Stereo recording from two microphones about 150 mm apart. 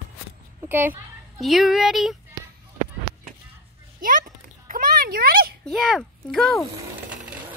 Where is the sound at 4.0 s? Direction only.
65° right (ahead or behind); by 5.6 s 90° right.